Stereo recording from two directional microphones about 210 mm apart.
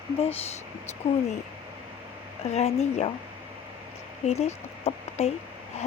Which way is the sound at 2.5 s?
30° left (ahead or behind).